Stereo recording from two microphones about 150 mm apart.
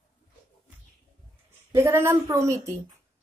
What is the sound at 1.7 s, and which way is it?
Speech, 15° right (ahead or behind).